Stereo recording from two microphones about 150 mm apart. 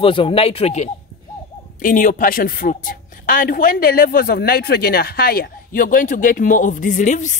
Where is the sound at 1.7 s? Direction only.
60° left (ahead or behind).